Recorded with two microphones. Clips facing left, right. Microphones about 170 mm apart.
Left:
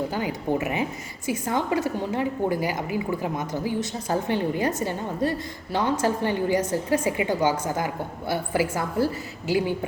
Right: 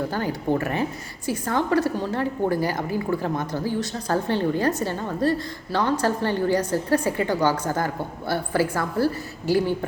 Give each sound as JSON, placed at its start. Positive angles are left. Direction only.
{"t": 0.1, "sound": "a woman's voice", "side_deg": 15}